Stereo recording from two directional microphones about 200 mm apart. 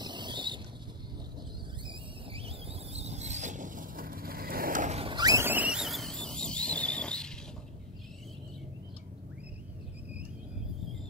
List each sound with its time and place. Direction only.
0.0 s boat: 20° right (ahead or behind)
1.9 s vehicle: 30° right (ahead or behind); by 7.3 s 5° left (ahead or behind)